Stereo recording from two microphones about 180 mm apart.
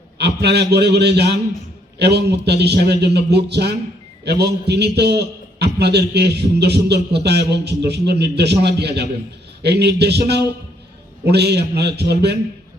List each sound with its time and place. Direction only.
0.2 s a man's voice: 70° right (ahead or behind)